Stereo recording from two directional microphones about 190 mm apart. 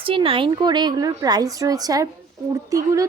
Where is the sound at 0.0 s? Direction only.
30° right (ahead or behind).